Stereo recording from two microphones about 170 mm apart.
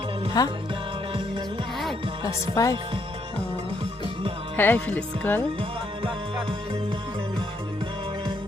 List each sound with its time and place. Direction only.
0.4 s music: 20° left (ahead or behind)
2.2 s music: 20° left (ahead or behind)
4.5 s speech: 10° left (ahead or behind)